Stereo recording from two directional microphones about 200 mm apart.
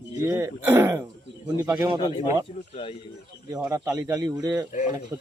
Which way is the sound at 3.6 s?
15° right (ahead or behind).